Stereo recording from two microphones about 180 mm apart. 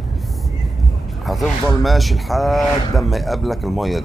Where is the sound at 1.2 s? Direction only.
Centre (ahead or behind).